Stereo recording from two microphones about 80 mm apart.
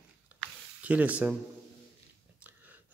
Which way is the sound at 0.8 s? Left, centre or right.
Centre.